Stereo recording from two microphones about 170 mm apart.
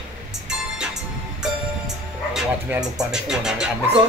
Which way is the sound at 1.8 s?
5° right (ahead or behind).